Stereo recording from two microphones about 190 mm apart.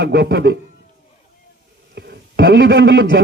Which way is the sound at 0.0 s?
60° right (ahead or behind).